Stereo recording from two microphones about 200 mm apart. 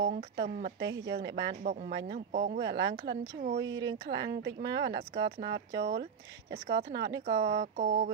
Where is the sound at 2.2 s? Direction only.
40° right (ahead or behind).